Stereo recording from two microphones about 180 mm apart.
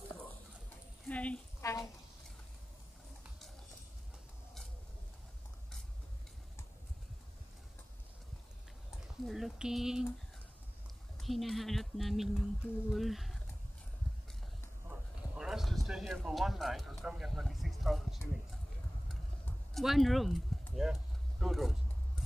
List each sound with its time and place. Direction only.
1.0 s a sound: 5° left (ahead or behind)
9.2 s speech: centre (ahead or behind)
11.1 s speech: centre (ahead or behind)
14.9 s clip-clop: 5° right (ahead or behind)
19.7 s speech: centre (ahead or behind)